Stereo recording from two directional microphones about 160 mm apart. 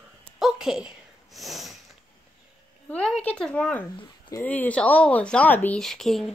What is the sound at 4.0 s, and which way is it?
Speech, 20° left (ahead or behind).